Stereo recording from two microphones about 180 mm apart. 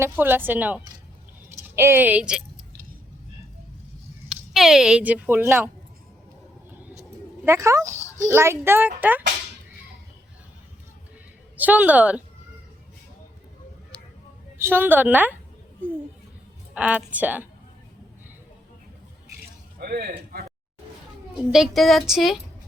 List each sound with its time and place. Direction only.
0.0 s a woman's voice: 10° right (ahead or behind)
4.5 s speech: centre (ahead or behind)
7.4 s speech: 15° right (ahead or behind)
11.5 s speech: 10° right (ahead or behind)
14.6 s speech: 10° right (ahead or behind)
16.7 s speech: 5° right (ahead or behind)
19.8 s speech: 60° right (ahead or behind)
21.5 s speech: centre (ahead or behind)